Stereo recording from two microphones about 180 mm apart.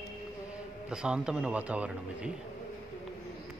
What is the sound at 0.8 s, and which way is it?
A man's voice, 5° right (ahead or behind).